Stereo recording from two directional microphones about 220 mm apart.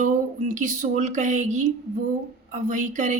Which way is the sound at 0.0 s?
35° right (ahead or behind).